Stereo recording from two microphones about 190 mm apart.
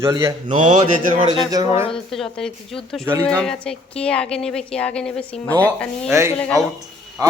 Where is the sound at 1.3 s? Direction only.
20° right (ahead or behind).